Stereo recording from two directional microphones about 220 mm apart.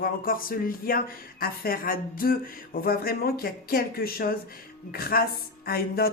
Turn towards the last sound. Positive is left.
turn(degrees=45)  # may be behind; listen again after turning